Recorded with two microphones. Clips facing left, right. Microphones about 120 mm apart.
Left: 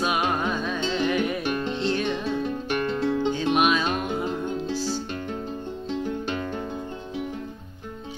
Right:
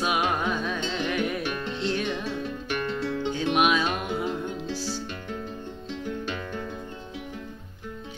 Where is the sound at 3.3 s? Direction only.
5° right (ahead or behind).